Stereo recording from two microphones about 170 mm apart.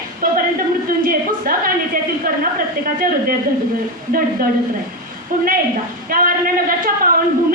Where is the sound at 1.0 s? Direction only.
55° right (ahead or behind).